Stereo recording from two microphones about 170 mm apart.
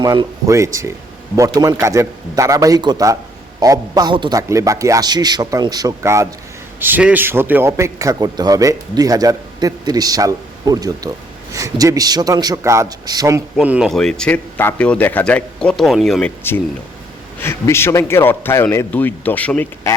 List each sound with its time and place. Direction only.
0.0 s a man's voice: 25° right (ahead or behind)
13.6 s speech: 5° right (ahead or behind)
17.4 s a man's voice: 15° left (ahead or behind)